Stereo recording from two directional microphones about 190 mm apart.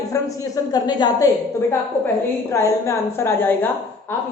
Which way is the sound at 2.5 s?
15° left (ahead or behind).